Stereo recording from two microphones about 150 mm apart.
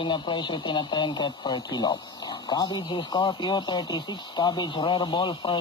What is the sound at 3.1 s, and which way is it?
Speech, 30° left (ahead or behind).